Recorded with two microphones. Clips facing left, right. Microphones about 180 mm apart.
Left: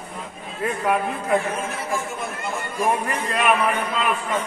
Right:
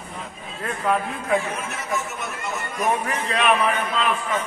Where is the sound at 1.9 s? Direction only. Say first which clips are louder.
Left 1 dB; 30° left (ahead or behind).